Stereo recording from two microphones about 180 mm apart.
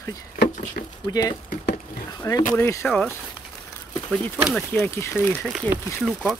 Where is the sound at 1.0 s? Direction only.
20° left (ahead or behind); by 4.8 s centre (ahead or behind).